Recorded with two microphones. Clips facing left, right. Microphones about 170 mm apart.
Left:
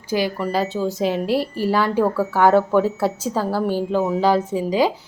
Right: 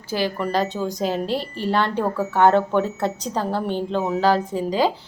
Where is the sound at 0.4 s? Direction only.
5° left (ahead or behind).